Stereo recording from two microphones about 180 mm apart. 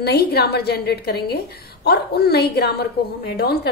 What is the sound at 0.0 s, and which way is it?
A woman's voice, 60° left (ahead or behind).